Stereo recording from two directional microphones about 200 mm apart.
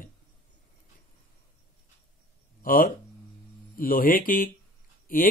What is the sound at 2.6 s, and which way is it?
Speech, 45° left (ahead or behind).